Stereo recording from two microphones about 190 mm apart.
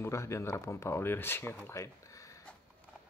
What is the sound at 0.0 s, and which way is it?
Speech, 15° left (ahead or behind).